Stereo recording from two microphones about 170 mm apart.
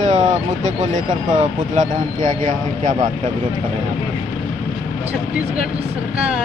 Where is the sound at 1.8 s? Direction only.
45° right (ahead or behind).